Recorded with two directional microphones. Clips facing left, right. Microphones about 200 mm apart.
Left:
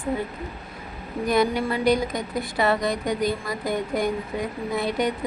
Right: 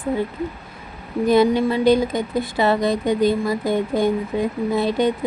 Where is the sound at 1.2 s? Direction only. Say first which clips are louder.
Right 6 dB; 25° right (ahead or behind).